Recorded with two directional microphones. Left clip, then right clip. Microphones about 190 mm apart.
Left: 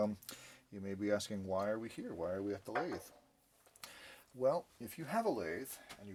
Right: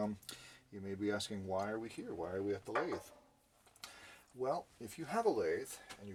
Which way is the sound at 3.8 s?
45° left (ahead or behind).